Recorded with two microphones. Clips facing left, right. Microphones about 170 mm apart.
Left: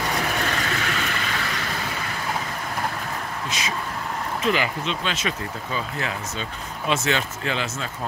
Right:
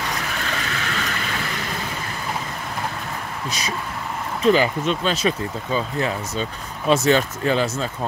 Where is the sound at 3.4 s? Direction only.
40° right (ahead or behind).